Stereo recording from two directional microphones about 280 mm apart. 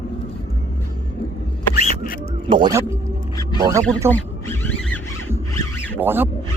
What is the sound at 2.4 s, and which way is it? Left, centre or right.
Speech, centre.